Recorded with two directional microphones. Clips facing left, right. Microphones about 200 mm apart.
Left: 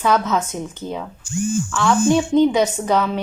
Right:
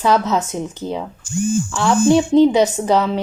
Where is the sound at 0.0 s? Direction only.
30° right (ahead or behind).